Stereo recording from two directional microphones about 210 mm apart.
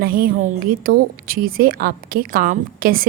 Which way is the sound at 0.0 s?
45° right (ahead or behind).